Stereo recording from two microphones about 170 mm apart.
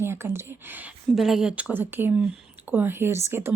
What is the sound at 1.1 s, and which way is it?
Speech, centre (ahead or behind).